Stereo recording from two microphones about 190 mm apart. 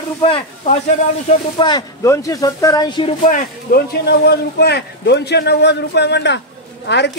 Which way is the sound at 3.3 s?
55° left (ahead or behind).